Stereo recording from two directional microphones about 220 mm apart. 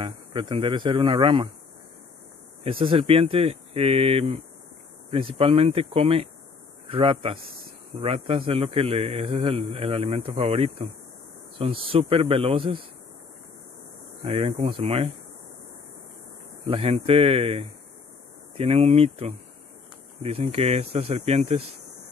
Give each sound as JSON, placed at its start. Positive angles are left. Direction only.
{"t": 0.0, "sound": "a man's voice", "side_deg": -20}
{"t": 2.8, "sound": "a man's voice", "side_deg": -25}
{"t": 14.2, "sound": "a man's voice", "side_deg": -25}
{"t": 16.6, "sound": "a man's voice", "side_deg": -25}